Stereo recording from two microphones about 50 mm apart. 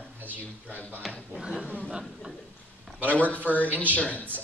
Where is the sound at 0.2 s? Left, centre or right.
Right.